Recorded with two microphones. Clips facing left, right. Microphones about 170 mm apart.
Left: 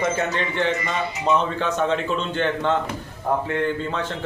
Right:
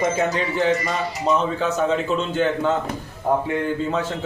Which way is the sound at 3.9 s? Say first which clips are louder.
Right 3 dB; 5° right (ahead or behind).